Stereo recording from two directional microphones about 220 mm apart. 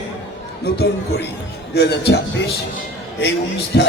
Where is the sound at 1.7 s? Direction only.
50° left (ahead or behind).